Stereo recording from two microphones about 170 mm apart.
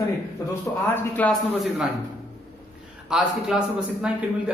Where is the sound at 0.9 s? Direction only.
10° left (ahead or behind).